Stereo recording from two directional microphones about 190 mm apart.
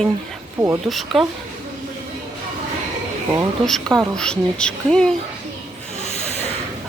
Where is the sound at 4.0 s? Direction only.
5° left (ahead or behind).